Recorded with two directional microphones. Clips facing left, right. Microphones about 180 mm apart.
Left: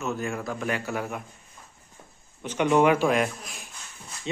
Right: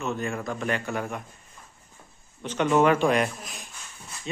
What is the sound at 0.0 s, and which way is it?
A man's voice, centre (ahead or behind).